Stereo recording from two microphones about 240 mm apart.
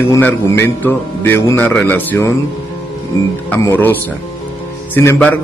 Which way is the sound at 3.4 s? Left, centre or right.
Centre.